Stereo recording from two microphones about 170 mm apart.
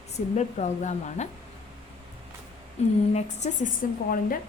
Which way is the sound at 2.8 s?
40° left (ahead or behind).